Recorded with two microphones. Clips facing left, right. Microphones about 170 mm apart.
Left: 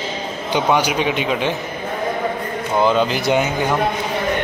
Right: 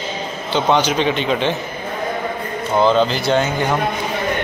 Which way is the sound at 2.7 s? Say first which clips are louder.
Right 2 dB; 10° left (ahead or behind).